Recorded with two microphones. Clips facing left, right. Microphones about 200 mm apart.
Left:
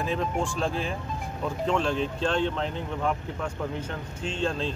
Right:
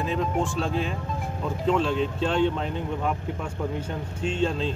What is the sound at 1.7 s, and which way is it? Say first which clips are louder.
Speech: right 4 dB; 5° right (ahead or behind).